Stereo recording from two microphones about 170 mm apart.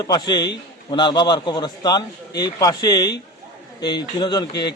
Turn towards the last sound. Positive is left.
turn(degrees=25)  # may be behind; listen again after turning